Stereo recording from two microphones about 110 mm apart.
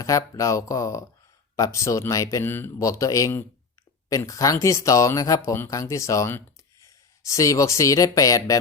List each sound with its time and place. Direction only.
0.0 s speech: 30° left (ahead or behind)